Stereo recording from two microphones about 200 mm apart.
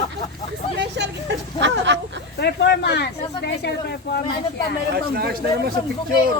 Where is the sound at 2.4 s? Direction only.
55° left (ahead or behind).